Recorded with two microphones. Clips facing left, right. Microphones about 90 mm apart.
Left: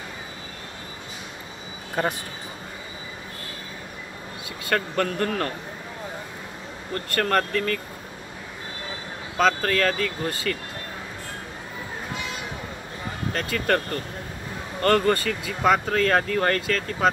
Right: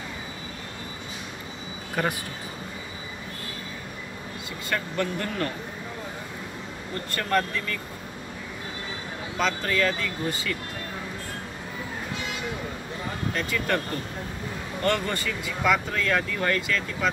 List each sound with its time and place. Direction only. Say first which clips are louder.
2.0 s speech: left 2 dB; 30° left (ahead or behind)
4.6 s speech: left 4 dB; 55° left (ahead or behind)
7.1 s speech: left 3 dB; 55° left (ahead or behind)
9.4 s speech: left 4 dB; 50° left (ahead or behind)
13.3 s speech: left 4 dB; 45° left (ahead or behind)
14.8 s speech: left 6 dB; 50° left (ahead or behind)